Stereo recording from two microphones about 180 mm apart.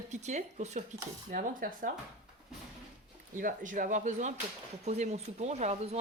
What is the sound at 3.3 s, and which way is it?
Speech, 45° right (ahead or behind).